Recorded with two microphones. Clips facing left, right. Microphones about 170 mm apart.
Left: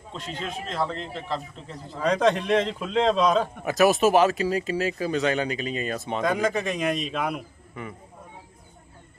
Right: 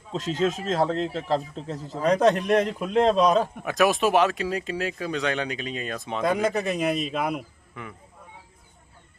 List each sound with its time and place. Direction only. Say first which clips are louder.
0.3 s a man's voice: right 6 dB; 40° right (ahead or behind)
2.0 s a man's voice: right 2 dB; 10° right (ahead or behind)
3.6 s speech: left 2 dB; 5° left (ahead or behind)